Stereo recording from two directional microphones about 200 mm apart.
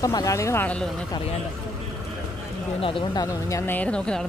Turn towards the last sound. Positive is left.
turn(degrees=5)  # may be behind; listen again after turning